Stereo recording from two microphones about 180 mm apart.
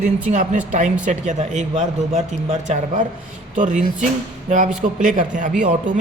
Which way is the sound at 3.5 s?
45° right (ahead or behind).